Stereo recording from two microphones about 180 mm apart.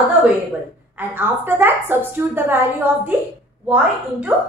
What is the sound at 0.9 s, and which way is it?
A woman's voice, 10° right (ahead or behind).